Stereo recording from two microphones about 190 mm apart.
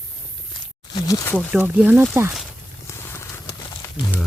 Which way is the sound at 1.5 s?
10° right (ahead or behind).